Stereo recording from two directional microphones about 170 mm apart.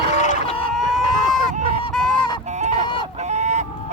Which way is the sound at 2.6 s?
40° right (ahead or behind).